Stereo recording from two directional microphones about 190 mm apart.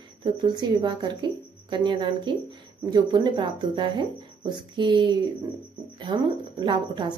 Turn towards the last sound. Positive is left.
turn(degrees=-25)  # may be behind; listen again after turning